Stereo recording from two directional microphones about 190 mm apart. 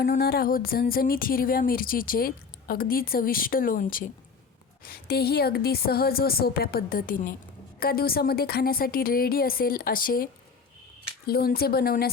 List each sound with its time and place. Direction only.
0.0 s speech: 55° left (ahead or behind)
11.3 s speech: 55° left (ahead or behind)